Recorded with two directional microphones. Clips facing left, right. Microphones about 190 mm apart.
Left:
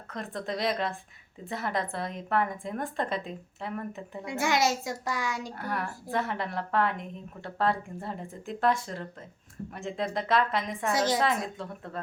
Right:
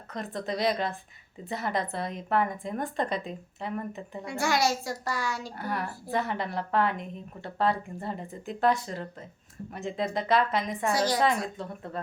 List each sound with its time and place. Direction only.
0.1 s a woman's voice: centre (ahead or behind)
4.3 s a child's voice: 20° left (ahead or behind)
5.5 s a woman's voice: centre (ahead or behind)
10.9 s a child's voice: 20° left (ahead or behind)
11.2 s a woman's voice: centre (ahead or behind)